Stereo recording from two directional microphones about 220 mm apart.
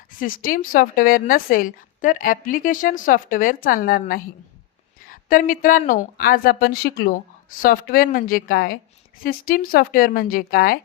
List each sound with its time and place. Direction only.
0.2 s speech: 40° left (ahead or behind)